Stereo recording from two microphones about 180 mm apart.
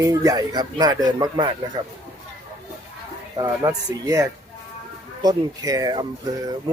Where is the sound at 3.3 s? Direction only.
20° right (ahead or behind).